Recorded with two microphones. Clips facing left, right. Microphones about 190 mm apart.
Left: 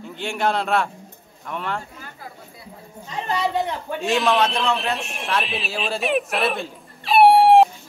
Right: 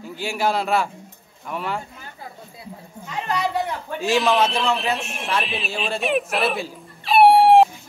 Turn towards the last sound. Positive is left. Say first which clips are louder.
# even
turn(degrees=0)  # may be behind; listen again after turning